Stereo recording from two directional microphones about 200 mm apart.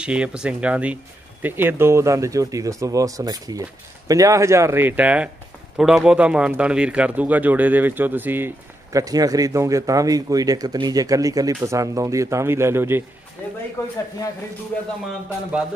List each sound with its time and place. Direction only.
0.0 s a man's voice: 5° right (ahead or behind)
13.8 s a man's voice: 15° left (ahead or behind)